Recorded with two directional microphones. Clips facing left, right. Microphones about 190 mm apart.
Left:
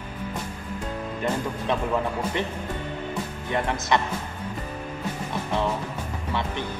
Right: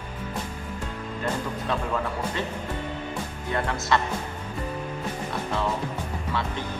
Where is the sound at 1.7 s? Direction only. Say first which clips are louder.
Left 3 dB; 20° left (ahead or behind).